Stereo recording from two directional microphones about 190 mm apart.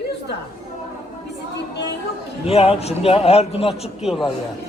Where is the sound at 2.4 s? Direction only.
30° left (ahead or behind).